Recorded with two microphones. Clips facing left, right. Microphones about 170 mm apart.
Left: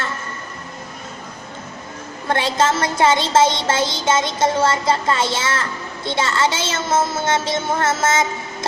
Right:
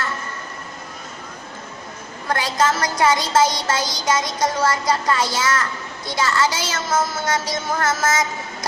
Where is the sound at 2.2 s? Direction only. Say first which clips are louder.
Left 2 dB; 25° left (ahead or behind).